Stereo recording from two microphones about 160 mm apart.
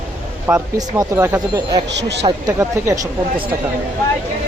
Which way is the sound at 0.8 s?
20° right (ahead or behind).